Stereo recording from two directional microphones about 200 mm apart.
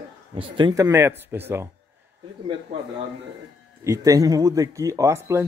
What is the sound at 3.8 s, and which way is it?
Speech, 15° right (ahead or behind).